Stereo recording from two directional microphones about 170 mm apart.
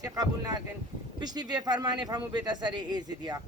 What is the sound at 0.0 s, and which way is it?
Speech, 20° right (ahead or behind).